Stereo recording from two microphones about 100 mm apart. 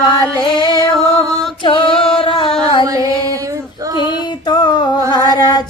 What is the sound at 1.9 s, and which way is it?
Music, 5° left (ahead or behind).